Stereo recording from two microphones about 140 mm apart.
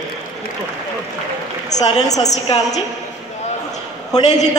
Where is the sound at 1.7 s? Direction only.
55° left (ahead or behind).